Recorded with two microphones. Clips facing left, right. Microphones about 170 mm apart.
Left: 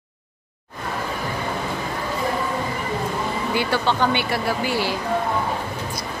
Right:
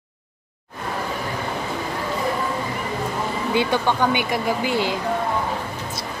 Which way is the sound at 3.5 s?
15° right (ahead or behind).